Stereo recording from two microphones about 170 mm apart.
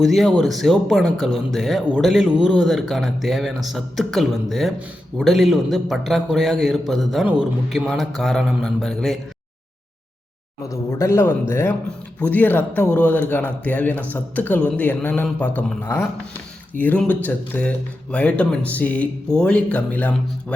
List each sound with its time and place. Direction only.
0.0 s speech: centre (ahead or behind)
10.6 s speech: 15° left (ahead or behind)